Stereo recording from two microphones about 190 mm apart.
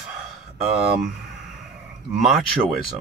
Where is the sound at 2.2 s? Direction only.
Centre (ahead or behind).